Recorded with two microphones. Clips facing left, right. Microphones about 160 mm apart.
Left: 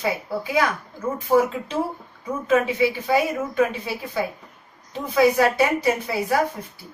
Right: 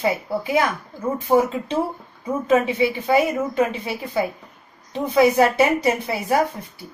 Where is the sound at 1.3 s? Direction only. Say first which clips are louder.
Right 1 dB; 25° right (ahead or behind).